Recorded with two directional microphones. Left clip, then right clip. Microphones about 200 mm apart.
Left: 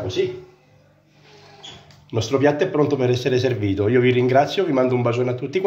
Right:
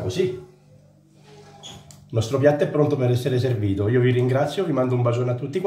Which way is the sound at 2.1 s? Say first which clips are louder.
Left 1 dB; 15° left (ahead or behind).